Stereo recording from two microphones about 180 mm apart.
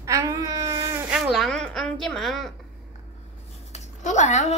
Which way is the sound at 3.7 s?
40° left (ahead or behind).